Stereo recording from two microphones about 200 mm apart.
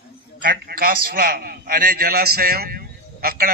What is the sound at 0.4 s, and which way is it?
A man's voice, 50° right (ahead or behind).